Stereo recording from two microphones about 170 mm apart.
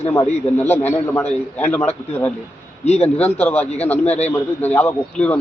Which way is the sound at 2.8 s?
40° left (ahead or behind).